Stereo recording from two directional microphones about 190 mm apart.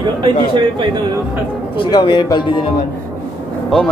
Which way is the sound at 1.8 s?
25° left (ahead or behind).